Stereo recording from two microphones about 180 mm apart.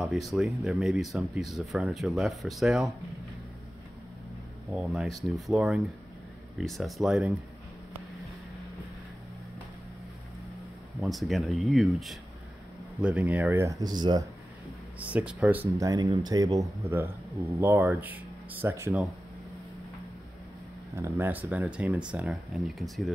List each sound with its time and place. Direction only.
0.3 s speech: centre (ahead or behind)
4.7 s speech: centre (ahead or behind)
11.0 s speech: centre (ahead or behind); by 14.2 s 25° right (ahead or behind)
15.0 s speech: 10° right (ahead or behind)
15.8 s speech: 20° right (ahead or behind)
20.9 s speech: 15° right (ahead or behind)